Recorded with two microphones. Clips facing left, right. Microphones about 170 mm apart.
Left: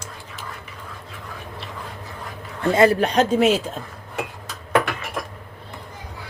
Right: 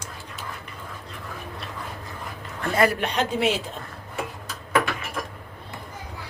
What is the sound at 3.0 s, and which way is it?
Speech, 40° left (ahead or behind).